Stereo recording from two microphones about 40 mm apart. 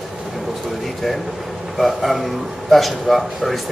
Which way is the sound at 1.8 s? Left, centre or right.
Centre.